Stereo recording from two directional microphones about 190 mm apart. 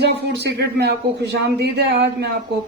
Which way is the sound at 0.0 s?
60° right (ahead or behind).